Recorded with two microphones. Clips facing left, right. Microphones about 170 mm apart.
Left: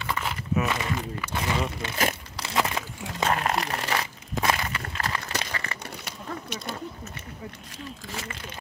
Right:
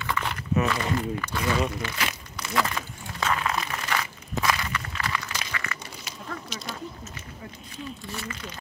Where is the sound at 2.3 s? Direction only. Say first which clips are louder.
Even; 25° left (ahead or behind).